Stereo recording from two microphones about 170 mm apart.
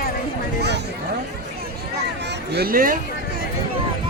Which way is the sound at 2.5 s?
60° right (ahead or behind).